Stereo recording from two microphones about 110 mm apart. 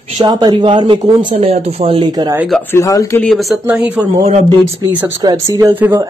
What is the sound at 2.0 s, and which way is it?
Speech, 40° right (ahead or behind).